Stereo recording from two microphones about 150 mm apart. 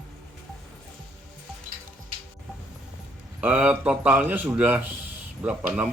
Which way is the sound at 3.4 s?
10° right (ahead or behind).